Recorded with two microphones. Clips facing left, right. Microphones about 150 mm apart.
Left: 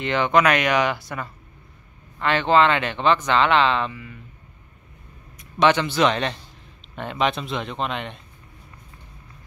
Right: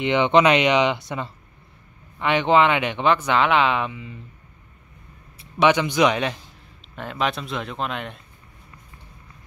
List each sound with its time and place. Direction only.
0.0 s speech: 20° right (ahead or behind)
5.6 s speech: 10° right (ahead or behind)